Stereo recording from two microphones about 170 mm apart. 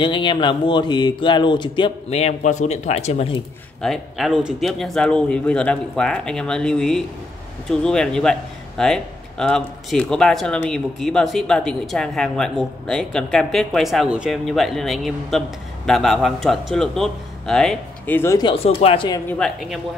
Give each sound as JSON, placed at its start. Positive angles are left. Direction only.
{"t": 0.0, "sound": "speech", "side_deg": 30}
{"t": 3.8, "sound": "speech", "side_deg": 0}
{"t": 18.4, "sound": "speech", "side_deg": 30}
{"t": 19.2, "sound": "speech", "side_deg": 5}